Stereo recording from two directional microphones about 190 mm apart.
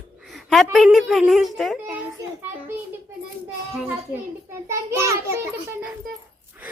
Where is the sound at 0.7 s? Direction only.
Centre (ahead or behind).